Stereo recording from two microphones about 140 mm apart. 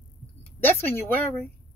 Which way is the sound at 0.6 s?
15° left (ahead or behind).